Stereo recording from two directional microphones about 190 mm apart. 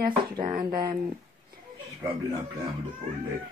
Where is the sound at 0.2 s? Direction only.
20° right (ahead or behind).